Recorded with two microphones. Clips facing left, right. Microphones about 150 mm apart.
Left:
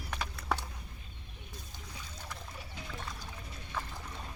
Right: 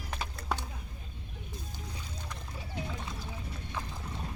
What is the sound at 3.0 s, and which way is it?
Music, 25° right (ahead or behind).